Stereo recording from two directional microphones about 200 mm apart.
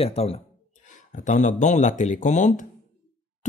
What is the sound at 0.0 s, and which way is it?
Speech, 30° left (ahead or behind).